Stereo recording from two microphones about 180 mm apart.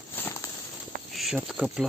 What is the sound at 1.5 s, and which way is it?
Speech, centre (ahead or behind).